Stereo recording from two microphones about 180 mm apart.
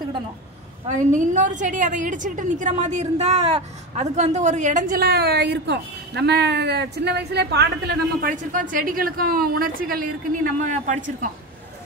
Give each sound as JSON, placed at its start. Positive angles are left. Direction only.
{"t": 0.8, "sound": "a woman's voice", "side_deg": -45}